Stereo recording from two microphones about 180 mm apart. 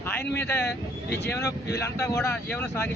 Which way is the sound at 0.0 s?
10° left (ahead or behind).